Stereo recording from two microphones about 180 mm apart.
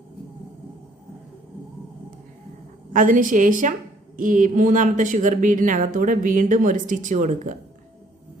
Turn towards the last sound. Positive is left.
turn(degrees=-45)  # may be behind; listen again after turning